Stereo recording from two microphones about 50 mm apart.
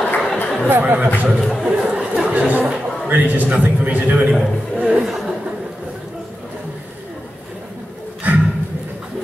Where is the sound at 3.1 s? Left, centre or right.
Right.